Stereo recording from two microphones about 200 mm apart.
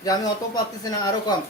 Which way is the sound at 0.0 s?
20° left (ahead or behind).